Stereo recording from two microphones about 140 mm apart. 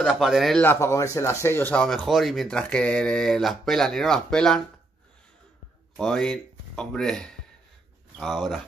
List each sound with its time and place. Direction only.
0.0 s speech: centre (ahead or behind)
0.6 s speech: 15° left (ahead or behind)
5.9 s speech: 5° left (ahead or behind)